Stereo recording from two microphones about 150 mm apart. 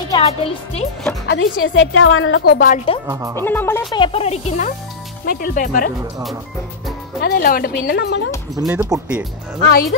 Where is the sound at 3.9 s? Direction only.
35° left (ahead or behind).